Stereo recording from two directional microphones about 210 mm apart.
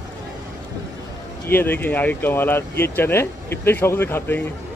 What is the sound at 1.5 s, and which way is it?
Speech, 10° left (ahead or behind).